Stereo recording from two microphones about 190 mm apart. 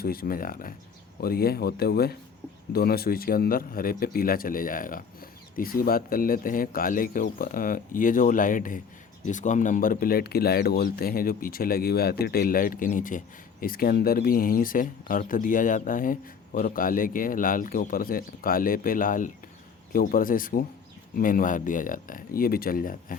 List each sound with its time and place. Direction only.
0.0 s speech: 50° left (ahead or behind)